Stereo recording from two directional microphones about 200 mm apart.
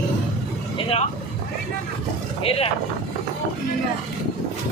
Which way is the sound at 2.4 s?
30° left (ahead or behind).